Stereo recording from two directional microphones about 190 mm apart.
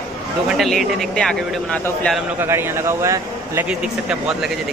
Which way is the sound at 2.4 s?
15° right (ahead or behind).